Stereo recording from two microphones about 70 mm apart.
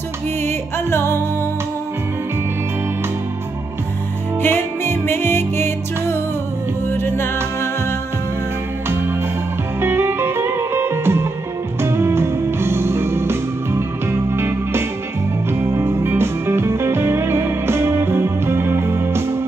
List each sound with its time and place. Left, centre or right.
0.4 s music: left
4.4 s music: left
9.8 s music: right